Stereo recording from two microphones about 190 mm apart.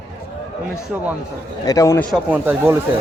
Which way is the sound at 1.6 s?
15° left (ahead or behind).